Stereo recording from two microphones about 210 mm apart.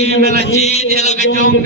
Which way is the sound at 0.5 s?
30° left (ahead or behind).